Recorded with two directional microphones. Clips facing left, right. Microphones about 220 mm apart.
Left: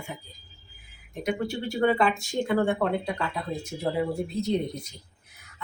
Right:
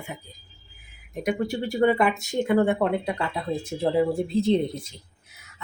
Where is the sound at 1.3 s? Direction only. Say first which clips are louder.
Right 2 dB; 15° right (ahead or behind).